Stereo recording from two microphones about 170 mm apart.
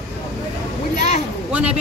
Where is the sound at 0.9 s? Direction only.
40° left (ahead or behind).